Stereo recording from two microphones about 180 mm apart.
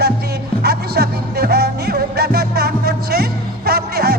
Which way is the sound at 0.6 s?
60° right (ahead or behind).